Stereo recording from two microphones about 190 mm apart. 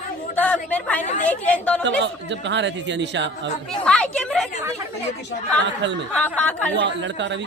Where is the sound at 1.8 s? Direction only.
70° right (ahead or behind).